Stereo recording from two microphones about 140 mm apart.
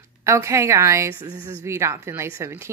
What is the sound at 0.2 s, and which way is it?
Speech, 20° right (ahead or behind).